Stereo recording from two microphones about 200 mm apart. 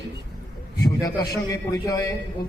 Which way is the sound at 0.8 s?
15° left (ahead or behind).